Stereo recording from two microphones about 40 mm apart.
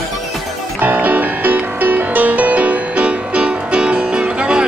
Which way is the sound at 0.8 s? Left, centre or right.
Right.